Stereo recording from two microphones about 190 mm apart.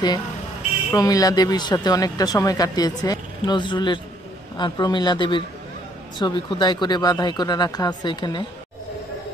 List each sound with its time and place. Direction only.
0.9 s speech: 20° left (ahead or behind)